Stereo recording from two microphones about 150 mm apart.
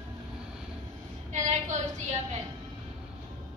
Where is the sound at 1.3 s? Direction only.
50° right (ahead or behind).